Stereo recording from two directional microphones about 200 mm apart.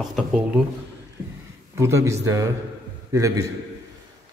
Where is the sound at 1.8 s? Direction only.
15° right (ahead or behind).